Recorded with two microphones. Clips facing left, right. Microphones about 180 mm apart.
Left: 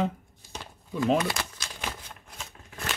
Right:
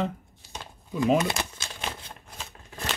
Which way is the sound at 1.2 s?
25° right (ahead or behind).